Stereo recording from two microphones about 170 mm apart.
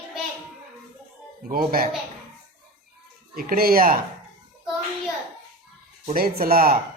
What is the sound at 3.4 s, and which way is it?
Speech, 60° right (ahead or behind).